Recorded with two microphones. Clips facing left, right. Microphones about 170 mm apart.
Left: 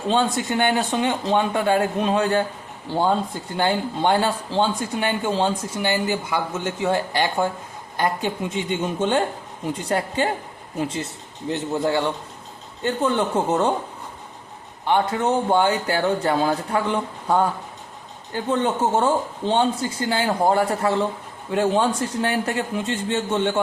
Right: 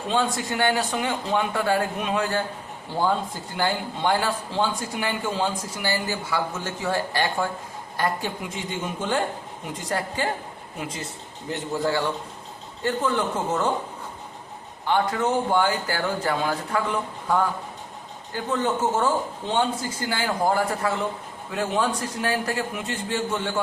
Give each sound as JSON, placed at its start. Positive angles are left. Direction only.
{"t": 0.1, "sound": "speech", "side_deg": 25}
{"t": 14.8, "sound": "speech", "side_deg": 25}
{"t": 18.4, "sound": "speech", "side_deg": 30}